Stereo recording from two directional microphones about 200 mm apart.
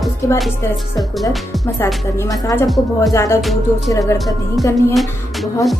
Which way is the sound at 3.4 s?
Centre (ahead or behind).